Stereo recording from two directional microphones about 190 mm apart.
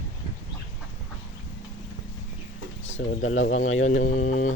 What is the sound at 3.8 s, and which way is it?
Speech, 40° left (ahead or behind).